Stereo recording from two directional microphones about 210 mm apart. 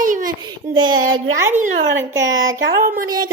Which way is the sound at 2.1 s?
15° right (ahead or behind).